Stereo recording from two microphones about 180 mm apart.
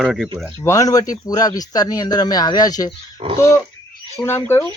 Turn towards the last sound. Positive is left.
turn(degrees=15)  # may be behind; listen again after turning